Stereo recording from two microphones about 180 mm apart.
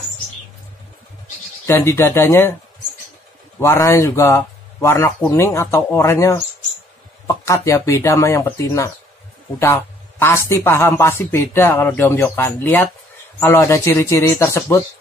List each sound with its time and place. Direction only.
1.7 s a man's voice: 15° left (ahead or behind)
3.5 s a man's voice: 15° left (ahead or behind)